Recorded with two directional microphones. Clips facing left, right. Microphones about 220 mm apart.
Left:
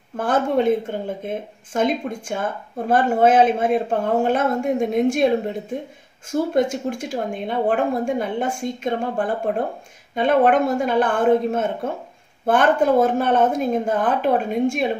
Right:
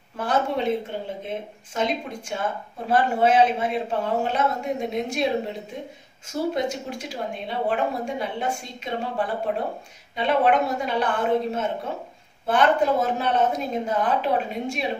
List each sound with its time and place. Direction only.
0.2 s speech: 50° left (ahead or behind)